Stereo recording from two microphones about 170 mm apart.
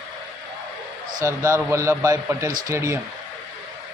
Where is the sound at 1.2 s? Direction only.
15° right (ahead or behind).